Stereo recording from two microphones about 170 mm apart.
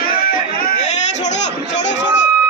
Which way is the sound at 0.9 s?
45° left (ahead or behind).